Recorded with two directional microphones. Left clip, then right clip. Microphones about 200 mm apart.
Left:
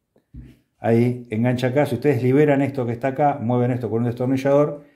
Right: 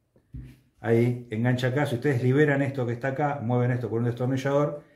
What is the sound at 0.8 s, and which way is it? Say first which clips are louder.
Speech: left 5 dB; 35° left (ahead or behind).